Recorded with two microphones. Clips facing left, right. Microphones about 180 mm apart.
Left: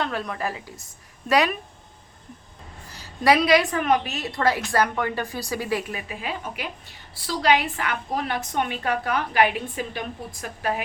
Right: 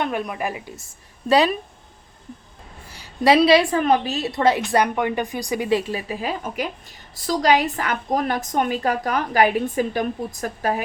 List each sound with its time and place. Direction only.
0.0 s a woman's voice: 15° right (ahead or behind)
2.9 s a sound: 10° right (ahead or behind)
3.2 s a woman's voice: 30° right (ahead or behind)